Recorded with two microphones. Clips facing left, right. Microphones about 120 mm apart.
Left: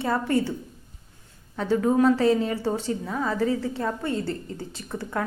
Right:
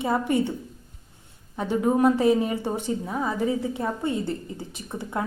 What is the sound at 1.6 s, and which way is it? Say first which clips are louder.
A woman's voice: left 1 dB; 20° right (ahead or behind).